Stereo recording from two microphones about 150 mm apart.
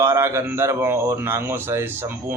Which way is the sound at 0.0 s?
20° right (ahead or behind).